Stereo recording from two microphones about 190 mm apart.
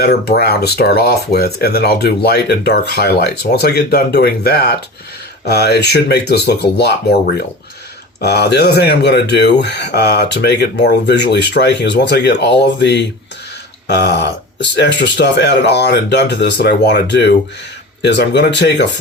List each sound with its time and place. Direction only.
0.0 s speech: 55° left (ahead or behind)